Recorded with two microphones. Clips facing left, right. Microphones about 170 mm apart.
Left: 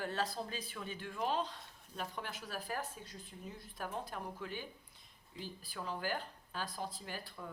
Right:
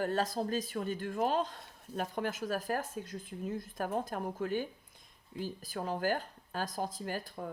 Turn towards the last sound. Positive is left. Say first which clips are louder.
# right 8 dB
turn(degrees=-45)  # may be behind; listen again after turning